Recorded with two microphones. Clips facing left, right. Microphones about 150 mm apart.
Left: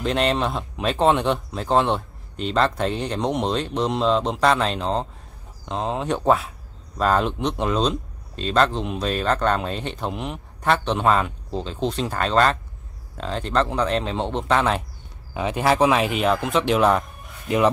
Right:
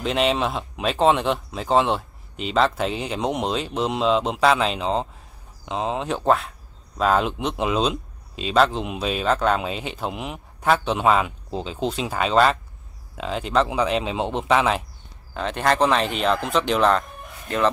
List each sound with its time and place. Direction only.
0.0 s speech: centre (ahead or behind)
15.3 s speech: 10° left (ahead or behind)